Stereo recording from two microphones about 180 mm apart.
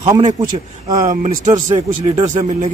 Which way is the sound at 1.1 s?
40° right (ahead or behind).